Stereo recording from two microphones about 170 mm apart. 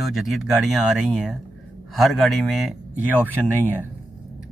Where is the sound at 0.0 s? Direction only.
Centre (ahead or behind).